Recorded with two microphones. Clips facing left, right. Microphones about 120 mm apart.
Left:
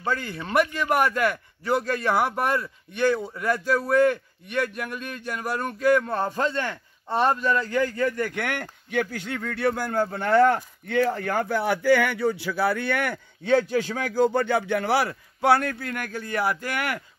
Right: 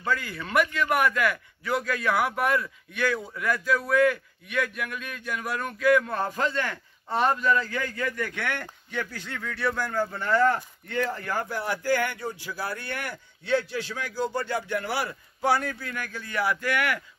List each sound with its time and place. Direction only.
0.0 s a man's voice: 30° left (ahead or behind)
8.3 s speech: 55° left (ahead or behind); by 17.0 s 35° left (ahead or behind)